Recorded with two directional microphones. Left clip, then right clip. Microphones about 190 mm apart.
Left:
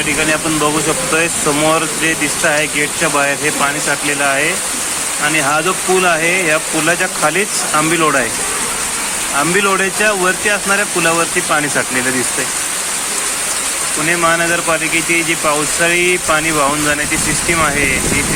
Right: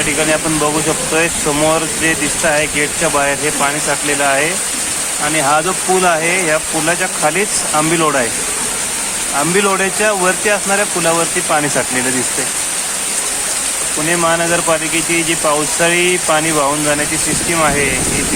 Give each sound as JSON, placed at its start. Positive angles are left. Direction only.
{"t": 1.5, "sound": "speech", "side_deg": -10}
{"t": 9.6, "sound": "speech", "side_deg": -10}
{"t": 14.1, "sound": "speech", "side_deg": -15}